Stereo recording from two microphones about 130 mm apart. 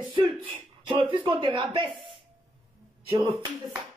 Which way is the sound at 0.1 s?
40° right (ahead or behind).